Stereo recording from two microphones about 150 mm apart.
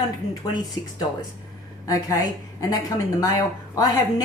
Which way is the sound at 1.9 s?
25° left (ahead or behind).